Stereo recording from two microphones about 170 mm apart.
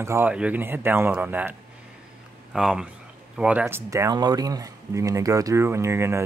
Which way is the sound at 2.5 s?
5° right (ahead or behind).